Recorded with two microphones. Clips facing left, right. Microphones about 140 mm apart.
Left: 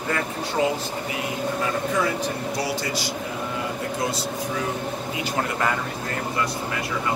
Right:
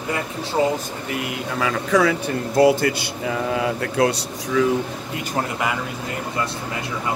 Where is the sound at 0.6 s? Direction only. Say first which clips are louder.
Right 3 dB; 25° right (ahead or behind).